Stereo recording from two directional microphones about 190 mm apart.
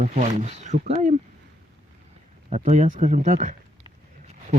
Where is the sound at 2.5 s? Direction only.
40° right (ahead or behind).